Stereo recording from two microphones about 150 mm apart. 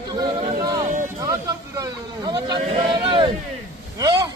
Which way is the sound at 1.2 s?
25° right (ahead or behind).